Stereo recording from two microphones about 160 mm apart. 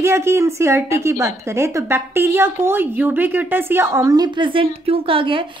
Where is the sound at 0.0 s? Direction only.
15° right (ahead or behind).